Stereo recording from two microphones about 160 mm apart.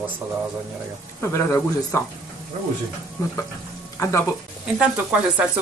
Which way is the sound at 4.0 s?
20° left (ahead or behind).